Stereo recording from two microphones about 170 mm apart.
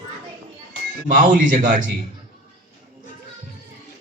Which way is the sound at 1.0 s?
50° right (ahead or behind).